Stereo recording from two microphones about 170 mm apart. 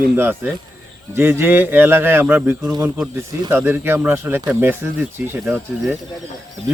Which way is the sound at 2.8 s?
5° right (ahead or behind).